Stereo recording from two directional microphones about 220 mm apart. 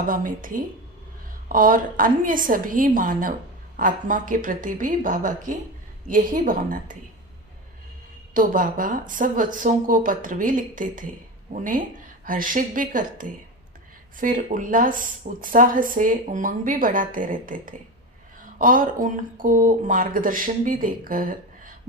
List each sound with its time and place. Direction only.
0.1 s speech: 40° right (ahead or behind)
8.3 s speech: 40° right (ahead or behind)